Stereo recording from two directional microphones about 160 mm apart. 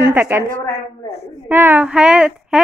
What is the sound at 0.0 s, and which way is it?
Speech, 15° right (ahead or behind).